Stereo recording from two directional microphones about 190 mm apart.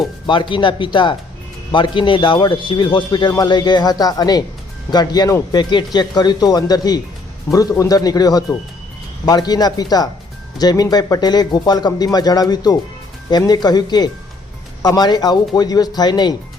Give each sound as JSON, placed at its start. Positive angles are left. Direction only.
{"t": 0.3, "sound": "a man's voice", "side_deg": 25}